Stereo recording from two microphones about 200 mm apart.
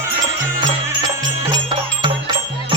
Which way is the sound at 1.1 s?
15° right (ahead or behind).